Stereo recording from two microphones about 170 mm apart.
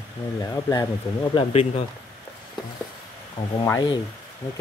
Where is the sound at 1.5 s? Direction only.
35° left (ahead or behind).